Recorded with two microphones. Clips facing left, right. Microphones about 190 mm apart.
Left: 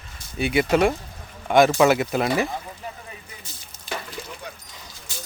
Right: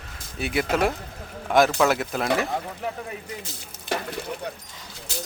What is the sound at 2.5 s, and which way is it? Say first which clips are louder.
Speech: right 5 dB; 65° right (ahead or behind).